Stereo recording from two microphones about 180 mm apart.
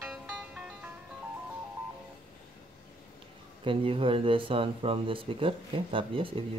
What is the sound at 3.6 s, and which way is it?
Speech, 30° right (ahead or behind).